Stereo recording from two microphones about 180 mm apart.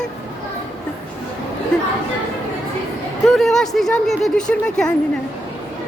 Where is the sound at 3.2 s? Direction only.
Centre (ahead or behind).